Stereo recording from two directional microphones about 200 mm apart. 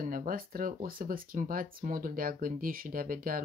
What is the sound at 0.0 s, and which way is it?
Speech, 45° right (ahead or behind).